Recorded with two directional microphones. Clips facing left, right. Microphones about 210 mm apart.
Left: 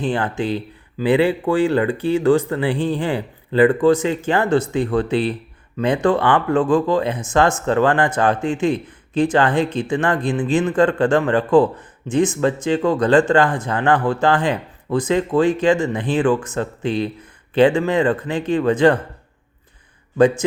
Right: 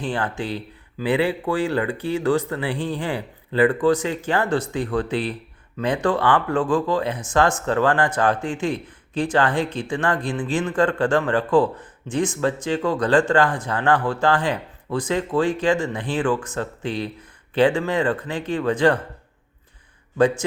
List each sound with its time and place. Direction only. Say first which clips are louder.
0.0 s speech: left 5 dB; 20° left (ahead or behind)
20.1 s speech: left 4 dB; 20° left (ahead or behind)